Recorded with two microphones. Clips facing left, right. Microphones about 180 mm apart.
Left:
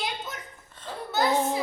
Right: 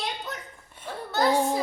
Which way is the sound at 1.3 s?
15° right (ahead or behind).